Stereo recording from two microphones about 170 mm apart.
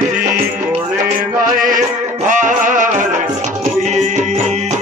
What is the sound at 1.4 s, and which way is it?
Music, 50° right (ahead or behind).